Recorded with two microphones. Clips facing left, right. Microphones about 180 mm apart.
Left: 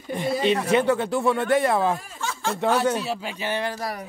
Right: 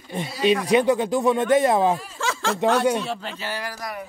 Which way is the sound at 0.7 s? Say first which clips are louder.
Right 2 dB; 15° right (ahead or behind).